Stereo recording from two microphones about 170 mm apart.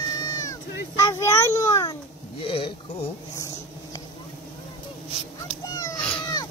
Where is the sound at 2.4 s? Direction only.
30° left (ahead or behind).